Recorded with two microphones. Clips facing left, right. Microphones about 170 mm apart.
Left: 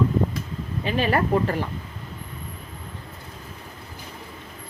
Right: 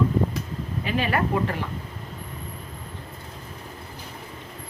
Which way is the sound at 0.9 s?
35° left (ahead or behind).